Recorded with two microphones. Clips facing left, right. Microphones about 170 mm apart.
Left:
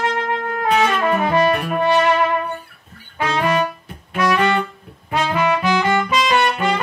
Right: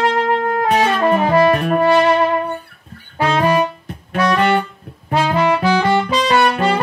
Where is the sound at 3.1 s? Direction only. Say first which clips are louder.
Right 4 dB; 30° right (ahead or behind).